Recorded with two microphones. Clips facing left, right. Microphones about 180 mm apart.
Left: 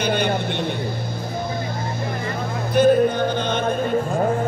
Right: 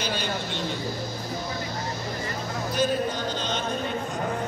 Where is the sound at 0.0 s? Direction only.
60° left (ahead or behind).